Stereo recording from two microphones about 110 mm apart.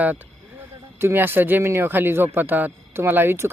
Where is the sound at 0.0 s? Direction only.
15° right (ahead or behind).